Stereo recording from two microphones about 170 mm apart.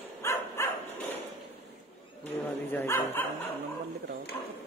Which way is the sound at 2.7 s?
15° left (ahead or behind).